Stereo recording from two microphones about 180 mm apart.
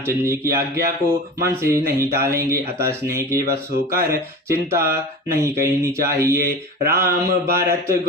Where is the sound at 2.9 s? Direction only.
15° right (ahead or behind).